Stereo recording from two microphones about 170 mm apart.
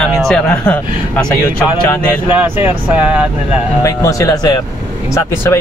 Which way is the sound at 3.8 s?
20° left (ahead or behind).